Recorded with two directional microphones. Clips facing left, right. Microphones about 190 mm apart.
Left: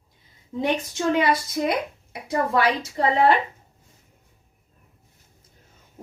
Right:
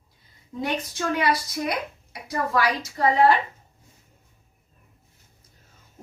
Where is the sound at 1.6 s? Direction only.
20° left (ahead or behind).